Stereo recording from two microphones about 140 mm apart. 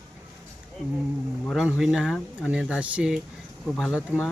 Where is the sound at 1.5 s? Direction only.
5° right (ahead or behind).